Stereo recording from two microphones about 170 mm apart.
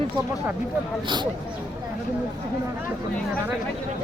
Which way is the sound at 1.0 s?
25° right (ahead or behind).